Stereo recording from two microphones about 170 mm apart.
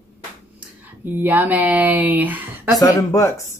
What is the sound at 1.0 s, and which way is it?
A child's voice, 10° right (ahead or behind).